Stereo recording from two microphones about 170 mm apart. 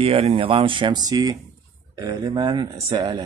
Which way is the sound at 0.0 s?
35° right (ahead or behind).